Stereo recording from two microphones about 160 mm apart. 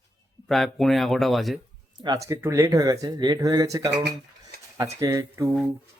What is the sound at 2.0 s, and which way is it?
Speech, 20° right (ahead or behind).